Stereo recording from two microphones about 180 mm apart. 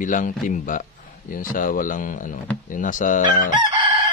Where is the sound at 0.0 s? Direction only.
45° left (ahead or behind).